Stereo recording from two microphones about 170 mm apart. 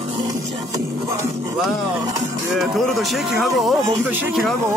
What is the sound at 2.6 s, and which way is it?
Speech, centre (ahead or behind).